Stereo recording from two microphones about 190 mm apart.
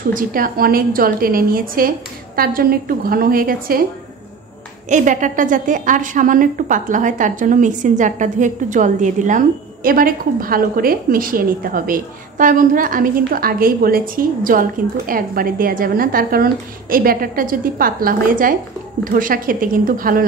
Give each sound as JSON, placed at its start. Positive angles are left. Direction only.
{"t": 0.1, "sound": "a woman's voice", "side_deg": -50}
{"t": 4.8, "sound": "a woman's voice", "side_deg": -40}